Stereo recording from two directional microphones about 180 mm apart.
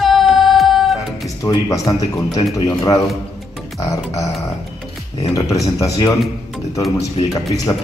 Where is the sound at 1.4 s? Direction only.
20° left (ahead or behind).